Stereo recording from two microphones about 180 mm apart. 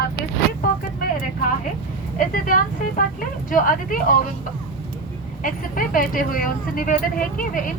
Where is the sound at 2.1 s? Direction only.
50° left (ahead or behind).